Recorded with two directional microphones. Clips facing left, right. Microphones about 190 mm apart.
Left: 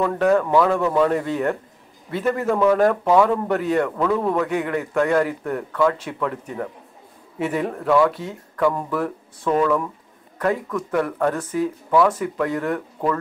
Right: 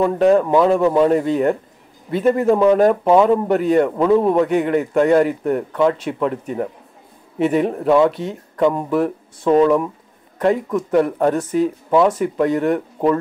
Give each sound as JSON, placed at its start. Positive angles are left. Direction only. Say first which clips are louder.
{"t": 0.0, "sound": "a man's voice", "louder": "right 4 dB", "side_deg": -25}